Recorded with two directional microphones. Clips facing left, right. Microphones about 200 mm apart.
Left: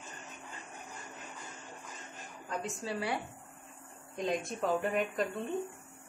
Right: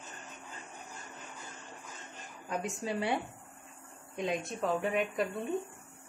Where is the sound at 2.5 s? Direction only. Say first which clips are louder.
Right 2 dB; 15° right (ahead or behind).